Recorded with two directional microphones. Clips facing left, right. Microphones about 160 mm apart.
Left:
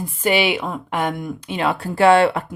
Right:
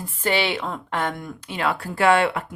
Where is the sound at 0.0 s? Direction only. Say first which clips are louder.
Left 4 dB; 10° left (ahead or behind).